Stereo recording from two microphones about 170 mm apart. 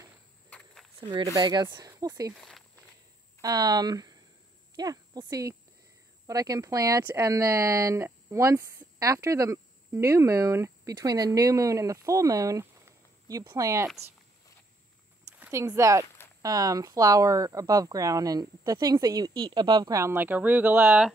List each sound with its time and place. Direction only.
1.0 s speech: 25° right (ahead or behind)
2.3 s speech: centre (ahead or behind)
3.3 s speech: 20° right (ahead or behind)
15.3 s a sound: 10° right (ahead or behind)
15.6 s speech: 20° right (ahead or behind)